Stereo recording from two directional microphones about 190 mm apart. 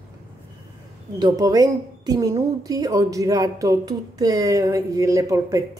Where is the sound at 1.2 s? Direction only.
20° right (ahead or behind).